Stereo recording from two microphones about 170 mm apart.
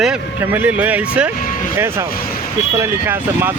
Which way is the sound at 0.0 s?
10° right (ahead or behind).